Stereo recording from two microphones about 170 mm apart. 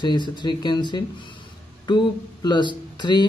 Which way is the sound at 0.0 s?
25° left (ahead or behind).